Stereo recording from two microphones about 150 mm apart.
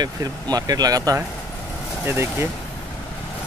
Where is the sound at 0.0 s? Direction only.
25° right (ahead or behind).